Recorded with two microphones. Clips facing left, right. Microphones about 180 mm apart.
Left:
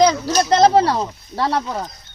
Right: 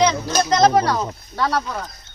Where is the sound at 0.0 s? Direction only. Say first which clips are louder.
Left 3 dB; 35° left (ahead or behind).